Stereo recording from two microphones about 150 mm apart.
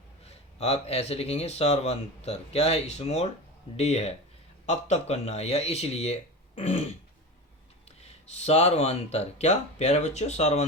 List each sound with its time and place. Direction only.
0.3 s speech: 45° left (ahead or behind)
8.0 s speech: 45° left (ahead or behind)